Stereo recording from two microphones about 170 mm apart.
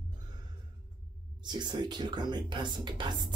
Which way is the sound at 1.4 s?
25° right (ahead or behind).